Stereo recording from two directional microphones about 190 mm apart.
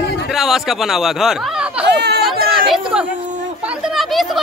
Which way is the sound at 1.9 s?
60° right (ahead or behind).